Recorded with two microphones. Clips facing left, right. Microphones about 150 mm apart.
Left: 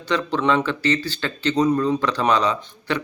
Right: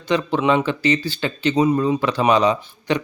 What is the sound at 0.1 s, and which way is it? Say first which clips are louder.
Speech: right 2 dB; 15° right (ahead or behind).